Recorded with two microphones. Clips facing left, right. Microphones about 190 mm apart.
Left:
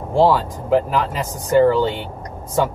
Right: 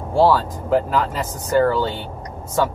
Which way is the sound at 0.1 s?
20° left (ahead or behind).